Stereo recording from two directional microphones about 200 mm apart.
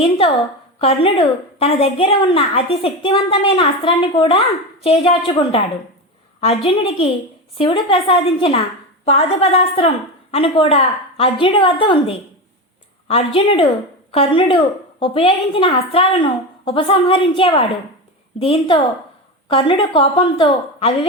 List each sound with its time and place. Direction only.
0.0 s a woman's voice: 25° left (ahead or behind)